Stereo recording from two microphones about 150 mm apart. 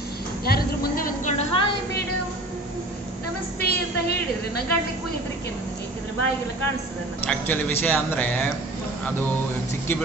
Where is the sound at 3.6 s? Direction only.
90° left.